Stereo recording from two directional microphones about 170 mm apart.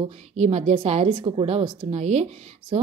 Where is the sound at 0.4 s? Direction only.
40° right (ahead or behind).